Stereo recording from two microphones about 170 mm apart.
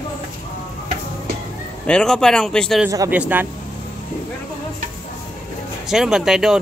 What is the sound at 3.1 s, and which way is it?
Speech, 10° right (ahead or behind).